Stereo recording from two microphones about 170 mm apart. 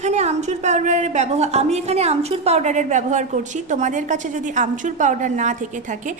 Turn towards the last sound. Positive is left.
turn(degrees=-50)  # may be behind; listen again after turning